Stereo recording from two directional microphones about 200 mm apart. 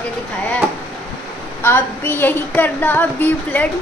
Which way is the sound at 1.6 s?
10° left (ahead or behind).